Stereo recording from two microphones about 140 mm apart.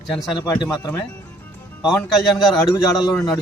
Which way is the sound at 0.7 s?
25° left (ahead or behind).